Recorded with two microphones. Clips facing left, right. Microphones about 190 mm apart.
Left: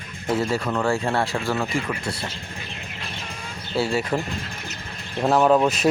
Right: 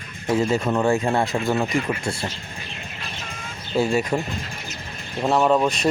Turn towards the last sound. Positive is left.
turn(degrees=5)  # may be behind; listen again after turning